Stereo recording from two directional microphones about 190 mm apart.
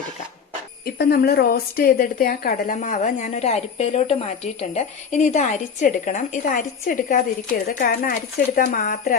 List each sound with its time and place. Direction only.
0.9 s a woman's voice: 55° left (ahead or behind)